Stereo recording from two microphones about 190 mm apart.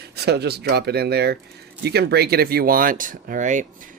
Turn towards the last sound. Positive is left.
turn(degrees=-40)  # may be behind; listen again after turning